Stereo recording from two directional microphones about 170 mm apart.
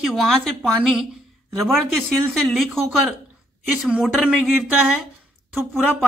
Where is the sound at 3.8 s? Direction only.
5° right (ahead or behind).